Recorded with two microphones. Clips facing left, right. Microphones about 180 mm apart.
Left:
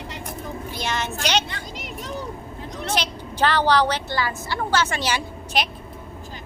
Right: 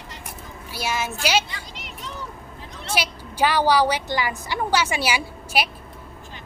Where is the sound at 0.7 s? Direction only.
5° right (ahead or behind).